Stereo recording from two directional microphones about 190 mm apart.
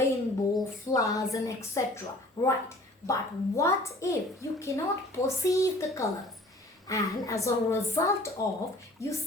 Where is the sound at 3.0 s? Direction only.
15° left (ahead or behind).